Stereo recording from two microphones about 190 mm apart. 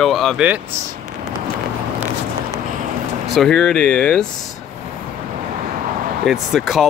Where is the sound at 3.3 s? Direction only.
Centre (ahead or behind).